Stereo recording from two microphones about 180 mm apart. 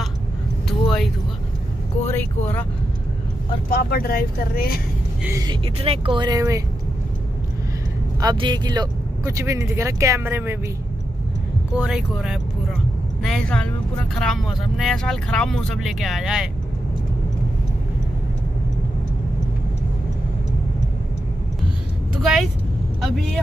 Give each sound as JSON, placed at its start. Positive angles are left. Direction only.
{"t": 0.7, "sound": "a sound", "side_deg": 0}
{"t": 2.0, "sound": "vehicle", "side_deg": 10}
{"t": 3.7, "sound": "speech", "side_deg": 55}
{"t": 5.2, "sound": "speech", "side_deg": -20}
{"t": 5.8, "sound": "speech", "side_deg": -30}
{"t": 8.2, "sound": "speech", "side_deg": -25}
{"t": 11.7, "sound": "speech", "side_deg": -5}
{"t": 22.2, "sound": "speech", "side_deg": 0}